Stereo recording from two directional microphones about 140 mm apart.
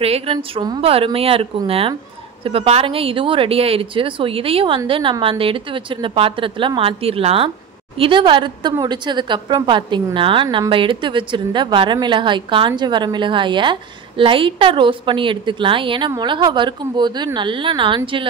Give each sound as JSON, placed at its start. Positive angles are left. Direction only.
{"t": 0.0, "sound": "a woman's voice", "side_deg": -45}